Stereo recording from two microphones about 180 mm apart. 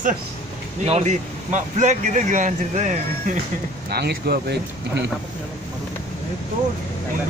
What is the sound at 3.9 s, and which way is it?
Speech, 60° right (ahead or behind).